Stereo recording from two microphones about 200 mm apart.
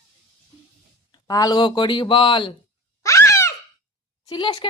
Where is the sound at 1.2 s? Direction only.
20° left (ahead or behind).